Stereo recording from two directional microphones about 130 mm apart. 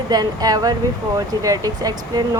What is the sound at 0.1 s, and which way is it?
Speech, 30° right (ahead or behind).